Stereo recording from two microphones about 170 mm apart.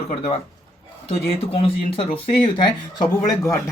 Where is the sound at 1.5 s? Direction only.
35° left (ahead or behind).